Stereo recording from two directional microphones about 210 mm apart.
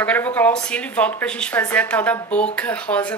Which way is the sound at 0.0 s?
5° left (ahead or behind).